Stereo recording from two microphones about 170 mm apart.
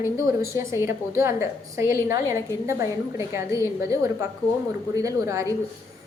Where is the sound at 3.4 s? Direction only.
20° right (ahead or behind).